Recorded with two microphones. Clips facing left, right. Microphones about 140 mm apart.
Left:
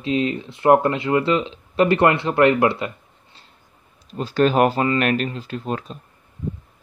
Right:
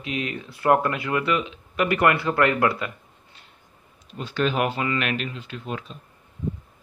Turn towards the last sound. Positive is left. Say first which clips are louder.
# left 6 dB
turn(degrees=40)  # may be behind; listen again after turning